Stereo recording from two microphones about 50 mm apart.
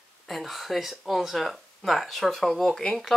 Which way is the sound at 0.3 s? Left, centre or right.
Centre.